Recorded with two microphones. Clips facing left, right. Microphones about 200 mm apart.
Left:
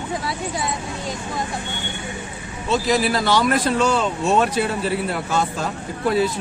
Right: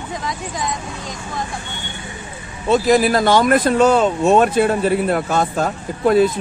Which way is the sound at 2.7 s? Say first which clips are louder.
Right 6 dB; 50° right (ahead or behind).